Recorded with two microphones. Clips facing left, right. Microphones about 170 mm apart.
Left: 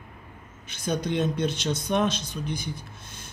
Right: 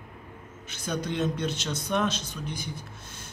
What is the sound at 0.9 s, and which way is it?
Speech, 20° left (ahead or behind).